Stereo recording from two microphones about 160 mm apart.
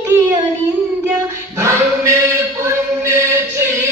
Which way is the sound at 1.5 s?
15° right (ahead or behind).